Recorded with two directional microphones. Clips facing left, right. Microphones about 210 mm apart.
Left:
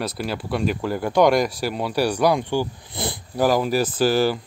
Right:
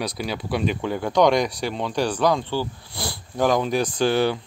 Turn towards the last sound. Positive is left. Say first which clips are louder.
# left 1 dB
turn(degrees=0)  # may be behind; listen again after turning